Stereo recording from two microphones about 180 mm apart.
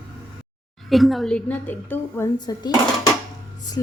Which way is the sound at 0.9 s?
Centre (ahead or behind).